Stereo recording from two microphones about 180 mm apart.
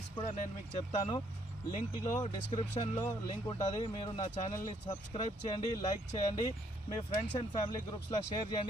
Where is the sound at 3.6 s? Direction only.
40° left (ahead or behind).